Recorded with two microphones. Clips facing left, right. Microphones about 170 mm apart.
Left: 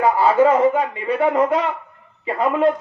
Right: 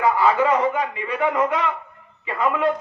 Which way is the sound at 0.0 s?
35° left (ahead or behind).